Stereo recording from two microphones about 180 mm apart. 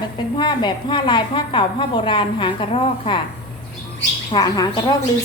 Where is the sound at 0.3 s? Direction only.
25° left (ahead or behind).